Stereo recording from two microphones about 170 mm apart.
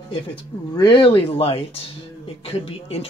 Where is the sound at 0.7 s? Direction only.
30° left (ahead or behind).